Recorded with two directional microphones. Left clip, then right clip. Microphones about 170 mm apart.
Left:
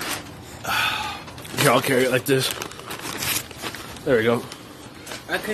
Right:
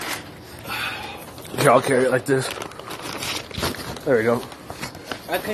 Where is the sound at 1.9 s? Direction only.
25° left (ahead or behind).